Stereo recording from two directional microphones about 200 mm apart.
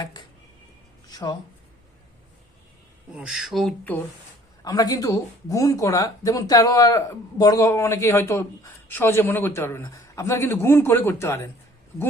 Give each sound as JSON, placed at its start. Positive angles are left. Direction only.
{"t": 0.0, "sound": "speech", "side_deg": 20}
{"t": 1.0, "sound": "a sound", "side_deg": 20}
{"t": 3.1, "sound": "speech", "side_deg": -5}
{"t": 4.6, "sound": "speech", "side_deg": 20}